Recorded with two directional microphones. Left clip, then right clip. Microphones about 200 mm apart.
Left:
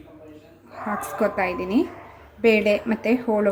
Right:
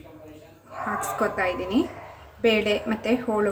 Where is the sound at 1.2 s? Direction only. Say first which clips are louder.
Left 3 dB; 25° left (ahead or behind).